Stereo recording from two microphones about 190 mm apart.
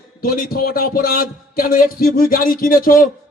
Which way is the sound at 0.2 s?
50° left (ahead or behind).